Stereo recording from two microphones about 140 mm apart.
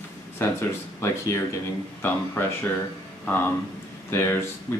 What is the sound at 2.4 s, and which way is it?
Speech, 15° left (ahead or behind).